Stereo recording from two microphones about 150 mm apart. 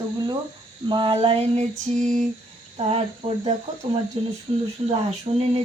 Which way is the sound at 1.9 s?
55° right (ahead or behind).